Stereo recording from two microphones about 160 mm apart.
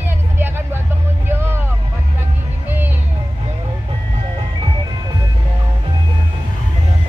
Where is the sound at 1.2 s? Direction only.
15° right (ahead or behind).